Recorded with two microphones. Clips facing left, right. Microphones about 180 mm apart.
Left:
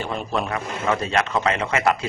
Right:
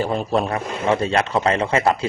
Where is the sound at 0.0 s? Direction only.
35° right (ahead or behind).